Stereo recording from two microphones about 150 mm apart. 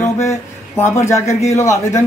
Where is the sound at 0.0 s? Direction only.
20° left (ahead or behind).